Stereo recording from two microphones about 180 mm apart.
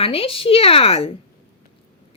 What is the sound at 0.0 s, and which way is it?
Speech, 30° left (ahead or behind).